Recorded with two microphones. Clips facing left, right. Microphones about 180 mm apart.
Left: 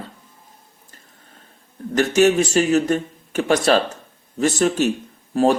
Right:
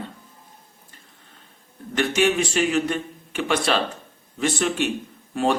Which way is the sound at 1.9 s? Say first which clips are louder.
Left 5 dB; 40° left (ahead or behind).